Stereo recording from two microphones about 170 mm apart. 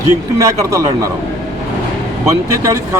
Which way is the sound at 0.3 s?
20° right (ahead or behind).